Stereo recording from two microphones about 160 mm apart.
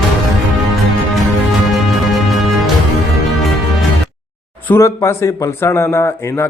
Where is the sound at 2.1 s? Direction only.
Centre (ahead or behind).